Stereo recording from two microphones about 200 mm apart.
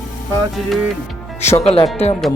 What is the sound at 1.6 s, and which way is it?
Music, 30° left (ahead or behind).